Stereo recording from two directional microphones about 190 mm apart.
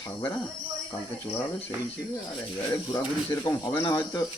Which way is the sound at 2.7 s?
20° left (ahead or behind).